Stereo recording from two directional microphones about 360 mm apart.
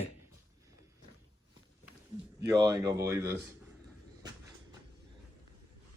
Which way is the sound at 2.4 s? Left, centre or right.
Centre.